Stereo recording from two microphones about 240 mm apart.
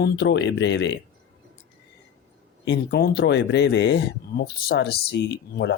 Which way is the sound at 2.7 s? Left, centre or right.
Left.